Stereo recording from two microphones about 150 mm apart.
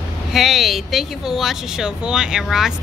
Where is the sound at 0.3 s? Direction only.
Centre (ahead or behind).